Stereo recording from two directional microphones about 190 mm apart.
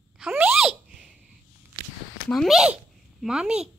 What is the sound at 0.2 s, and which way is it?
Sneeze, 5° right (ahead or behind).